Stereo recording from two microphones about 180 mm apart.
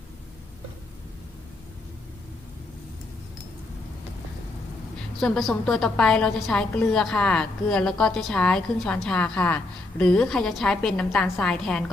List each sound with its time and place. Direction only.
5.2 s a woman's voice: centre (ahead or behind)